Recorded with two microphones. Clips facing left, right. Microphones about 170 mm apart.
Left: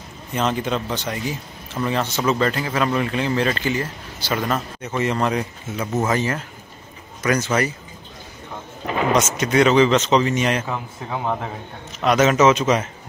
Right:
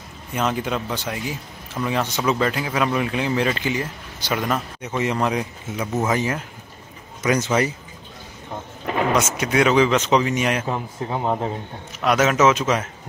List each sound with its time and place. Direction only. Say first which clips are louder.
0.3 s speech: left 1 dB; 5° right (ahead or behind)
9.1 s speech: left 4 dB; 5° right (ahead or behind)
10.7 s speech: right 2 dB; 20° right (ahead or behind)
12.0 s a man's voice: left 2 dB; 5° right (ahead or behind)